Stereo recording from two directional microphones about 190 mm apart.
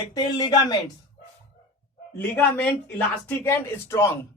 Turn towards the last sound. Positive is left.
turn(degrees=15)  # may be behind; listen again after turning